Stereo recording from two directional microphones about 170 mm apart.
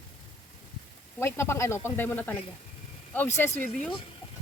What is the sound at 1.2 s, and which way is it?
Speech, 15° left (ahead or behind).